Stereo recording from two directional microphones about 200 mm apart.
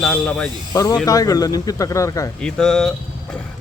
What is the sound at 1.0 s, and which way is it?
Speech, 20° left (ahead or behind).